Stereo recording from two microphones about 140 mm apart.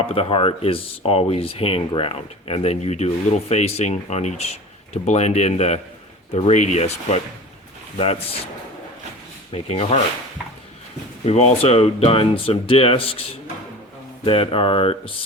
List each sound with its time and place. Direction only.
0.0 s speech: 45° left (ahead or behind)
7.9 s speech: 45° left (ahead or behind)
9.5 s speech: 45° left (ahead or behind)
11.3 s speech: 50° left (ahead or behind)
14.3 s speech: 40° left (ahead or behind)